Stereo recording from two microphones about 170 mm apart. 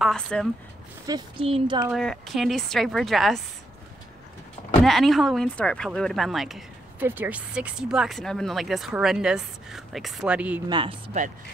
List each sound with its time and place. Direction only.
0.0 s speech: 5° left (ahead or behind)
1.0 s speech: 25° right (ahead or behind)
1.9 s speech: centre (ahead or behind)
4.8 s speech: centre (ahead or behind)
10.7 s speech: 30° right (ahead or behind)